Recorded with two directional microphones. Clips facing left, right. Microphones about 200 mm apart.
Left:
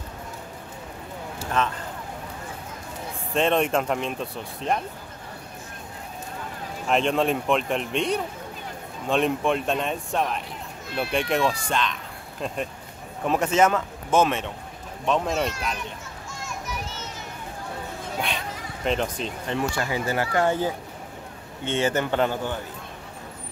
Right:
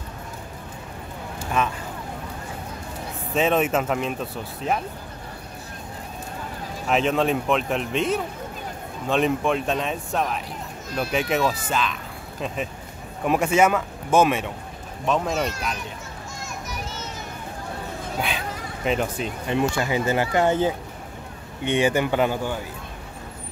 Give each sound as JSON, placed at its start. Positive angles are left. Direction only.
{"t": 1.6, "sound": "speech", "side_deg": -10}
{"t": 3.3, "sound": "speech", "side_deg": -5}
{"t": 6.9, "sound": "speech", "side_deg": -5}
{"t": 16.4, "sound": "a sound", "side_deg": -40}
{"t": 18.9, "sound": "speech", "side_deg": -5}
{"t": 19.7, "sound": "speech", "side_deg": -20}